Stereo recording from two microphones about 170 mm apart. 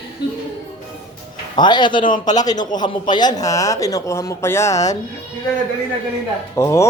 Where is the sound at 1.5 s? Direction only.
25° left (ahead or behind).